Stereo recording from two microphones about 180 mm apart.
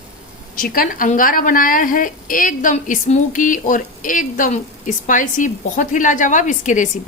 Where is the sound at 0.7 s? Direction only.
50° left (ahead or behind).